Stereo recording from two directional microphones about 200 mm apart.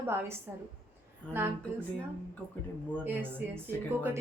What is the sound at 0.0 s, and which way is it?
Speech, 10° right (ahead or behind).